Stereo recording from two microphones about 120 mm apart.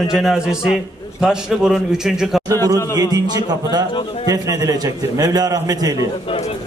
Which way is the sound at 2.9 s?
30° right (ahead or behind).